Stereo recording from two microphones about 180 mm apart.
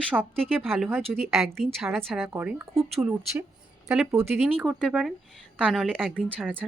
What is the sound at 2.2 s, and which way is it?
Speech, 10° right (ahead or behind).